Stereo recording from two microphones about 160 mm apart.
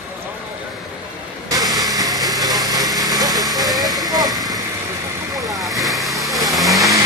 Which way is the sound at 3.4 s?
Centre (ahead or behind).